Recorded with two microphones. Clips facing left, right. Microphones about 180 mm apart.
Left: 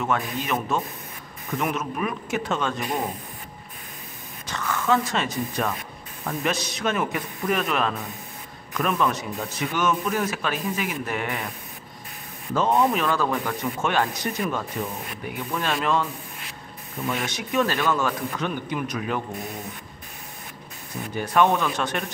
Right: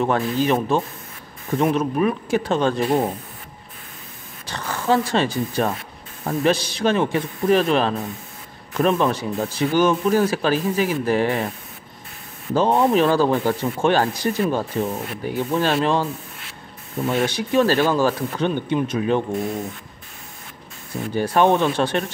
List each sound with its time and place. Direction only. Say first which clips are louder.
0.3 s speech: right 7 dB; 30° right (ahead or behind)
4.5 s speech: right 2 dB; 35° right (ahead or behind)
12.5 s speech: right 4 dB; 30° right (ahead or behind)
21.1 s speech: right 4 dB; 30° right (ahead or behind)